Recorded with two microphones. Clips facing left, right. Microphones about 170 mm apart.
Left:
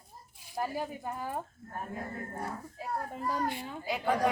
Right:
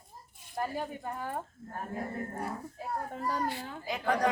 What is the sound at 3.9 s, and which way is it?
Speech, 5° left (ahead or behind).